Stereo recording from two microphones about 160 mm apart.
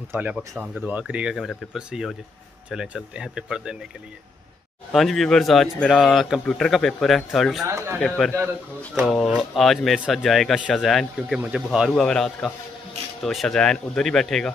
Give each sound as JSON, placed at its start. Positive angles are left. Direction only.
{"t": 0.6, "sound": "speech", "side_deg": -5}
{"t": 4.9, "sound": "speech", "side_deg": 0}
{"t": 7.6, "sound": "speech", "side_deg": -15}
{"t": 8.9, "sound": "speech", "side_deg": 0}